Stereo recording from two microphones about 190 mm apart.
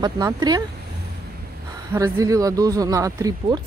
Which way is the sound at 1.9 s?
15° right (ahead or behind).